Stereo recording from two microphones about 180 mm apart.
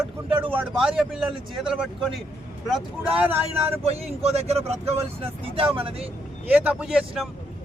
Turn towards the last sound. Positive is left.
turn(degrees=0)  # may be behind; listen again after turning